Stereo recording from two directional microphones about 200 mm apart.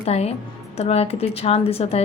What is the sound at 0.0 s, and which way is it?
A woman's voice, 30° left (ahead or behind).